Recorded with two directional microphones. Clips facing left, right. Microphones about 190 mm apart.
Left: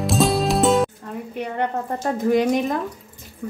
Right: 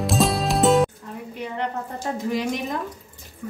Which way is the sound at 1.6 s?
55° left (ahead or behind).